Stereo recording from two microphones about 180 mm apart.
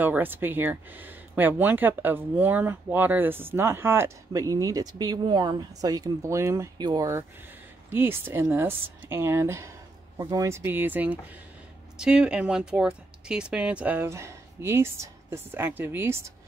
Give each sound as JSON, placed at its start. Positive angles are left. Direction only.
{"t": 0.0, "sound": "speech", "side_deg": -10}